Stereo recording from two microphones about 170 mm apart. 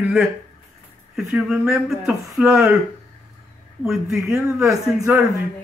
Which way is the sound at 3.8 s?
Centre (ahead or behind).